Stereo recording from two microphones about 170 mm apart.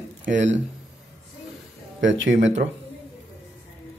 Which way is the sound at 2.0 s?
90° right.